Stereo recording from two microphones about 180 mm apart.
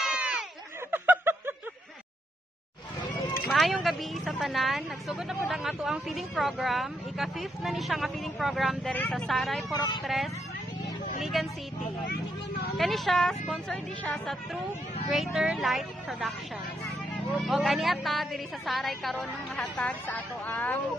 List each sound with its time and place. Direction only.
0.0 s a sound: 5° right (ahead or behind)
3.4 s speech: centre (ahead or behind)
9.7 s speech: 25° left (ahead or behind)
10.0 s speech: centre (ahead or behind)
17.4 s speech: centre (ahead or behind)